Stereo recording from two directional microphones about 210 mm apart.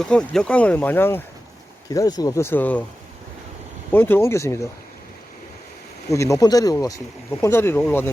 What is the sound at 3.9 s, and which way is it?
Speech, 10° left (ahead or behind).